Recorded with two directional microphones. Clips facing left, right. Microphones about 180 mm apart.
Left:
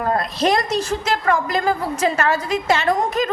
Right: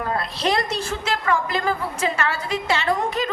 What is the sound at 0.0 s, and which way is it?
A woman's voice, 45° left (ahead or behind).